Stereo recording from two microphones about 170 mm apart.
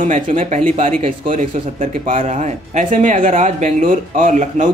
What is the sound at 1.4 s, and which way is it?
Speech, 50° right (ahead or behind).